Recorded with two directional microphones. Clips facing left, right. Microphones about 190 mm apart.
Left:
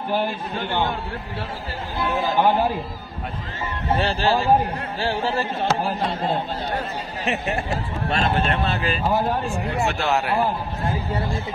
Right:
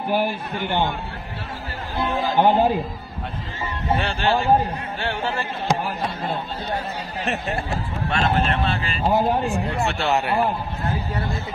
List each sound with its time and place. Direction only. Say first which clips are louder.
0.1 s a man's voice: right 1 dB; 15° right (ahead or behind)
2.0 s a man's voice: right 1 dB; 20° right (ahead or behind)
4.0 s speech: left 2 dB; 35° left (ahead or behind)
8.1 s speech: even; 40° left (ahead or behind)
9.0 s a man's voice: right 4 dB; 20° right (ahead or behind)
10.0 s a man's voice: right 2 dB; centre (ahead or behind)